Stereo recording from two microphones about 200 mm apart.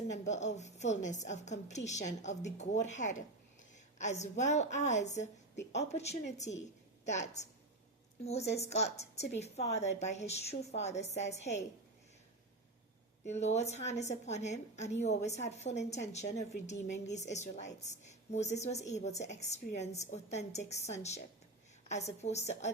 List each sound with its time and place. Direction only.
0.3 s a woman's voice: 35° left (ahead or behind)
13.2 s a woman's voice: 35° left (ahead or behind)